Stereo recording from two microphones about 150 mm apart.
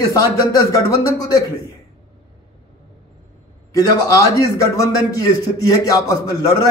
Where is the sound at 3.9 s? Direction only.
20° left (ahead or behind).